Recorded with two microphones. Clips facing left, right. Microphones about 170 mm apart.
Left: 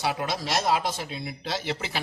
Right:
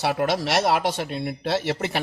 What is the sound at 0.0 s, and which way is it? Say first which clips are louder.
Speech: right 6 dB; 65° right (ahead or behind).